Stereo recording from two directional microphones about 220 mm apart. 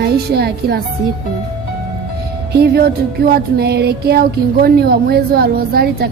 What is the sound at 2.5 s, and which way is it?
Music, 45° right (ahead or behind).